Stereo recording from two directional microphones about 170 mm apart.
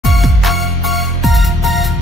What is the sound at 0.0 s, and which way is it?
Music, centre (ahead or behind).